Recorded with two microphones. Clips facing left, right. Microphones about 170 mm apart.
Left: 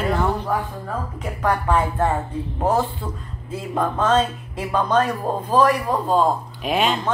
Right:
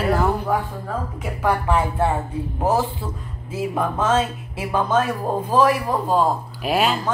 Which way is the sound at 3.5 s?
5° right (ahead or behind).